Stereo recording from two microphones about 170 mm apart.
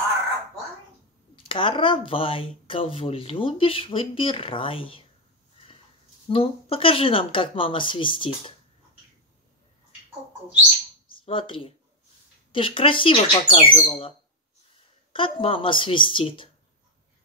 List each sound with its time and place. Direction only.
1.3 s speech: 30° left (ahead or behind)
6.2 s speech: 35° left (ahead or behind)
11.1 s speech: 30° left (ahead or behind)
15.1 s speech: 30° left (ahead or behind)